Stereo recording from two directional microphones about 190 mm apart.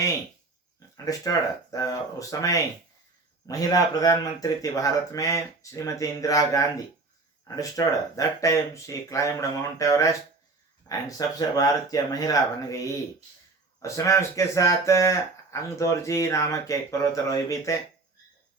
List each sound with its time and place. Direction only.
0.9 s speech: 20° left (ahead or behind)